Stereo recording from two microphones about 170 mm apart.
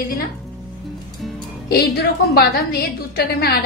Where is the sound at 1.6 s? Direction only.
70° left (ahead or behind).